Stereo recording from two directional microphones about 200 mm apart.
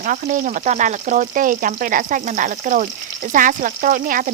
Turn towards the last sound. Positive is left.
turn(degrees=-40)  # may be behind; listen again after turning